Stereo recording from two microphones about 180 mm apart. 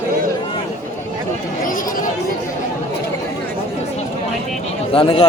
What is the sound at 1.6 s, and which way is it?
Chatter, 50° left (ahead or behind).